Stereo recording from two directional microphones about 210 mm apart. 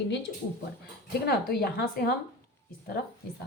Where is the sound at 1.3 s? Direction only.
45° left (ahead or behind).